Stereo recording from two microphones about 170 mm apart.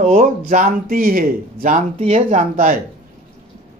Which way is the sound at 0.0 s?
45° right (ahead or behind).